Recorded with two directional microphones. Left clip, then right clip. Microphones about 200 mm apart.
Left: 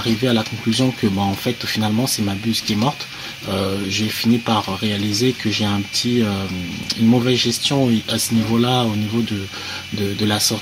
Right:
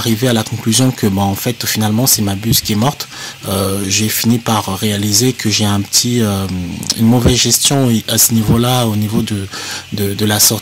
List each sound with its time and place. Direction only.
0.0 s speech: 40° right (ahead or behind)
10.1 s speech: 40° right (ahead or behind)